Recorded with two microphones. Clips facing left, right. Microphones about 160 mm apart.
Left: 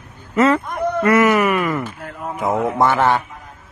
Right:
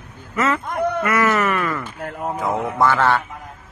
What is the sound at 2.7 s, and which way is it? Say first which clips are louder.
Mantra: left 1 dB; 20° left (ahead or behind).